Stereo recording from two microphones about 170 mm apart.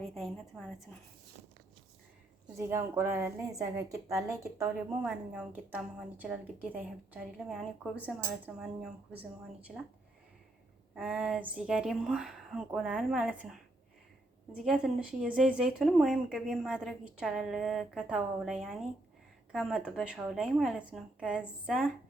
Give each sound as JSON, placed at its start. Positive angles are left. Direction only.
{"t": 0.0, "sound": "a woman's voice", "side_deg": 0}
{"t": 2.6, "sound": "a woman's voice", "side_deg": -15}
{"t": 5.0, "sound": "a woman's voice", "side_deg": -5}
{"t": 10.9, "sound": "a woman's voice", "side_deg": 0}